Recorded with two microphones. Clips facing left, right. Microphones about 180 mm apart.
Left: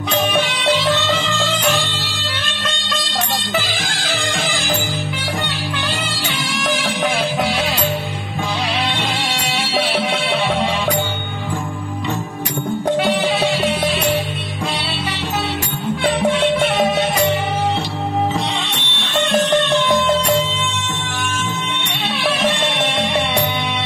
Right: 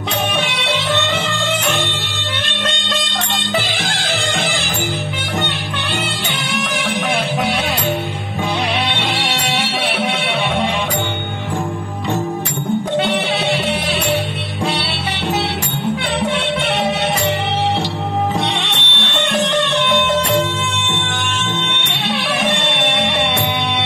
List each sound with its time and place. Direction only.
18.6 s music: 65° right (ahead or behind)
22.4 s music: 65° right (ahead or behind)